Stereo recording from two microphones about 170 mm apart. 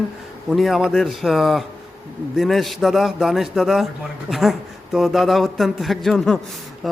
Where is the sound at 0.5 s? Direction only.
Centre (ahead or behind).